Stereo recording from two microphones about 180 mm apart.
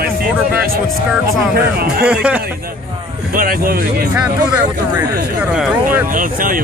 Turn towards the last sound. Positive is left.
turn(degrees=-50)  # may be behind; listen again after turning